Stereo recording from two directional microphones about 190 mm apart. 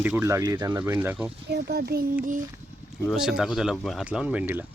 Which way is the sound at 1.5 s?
60° right (ahead or behind).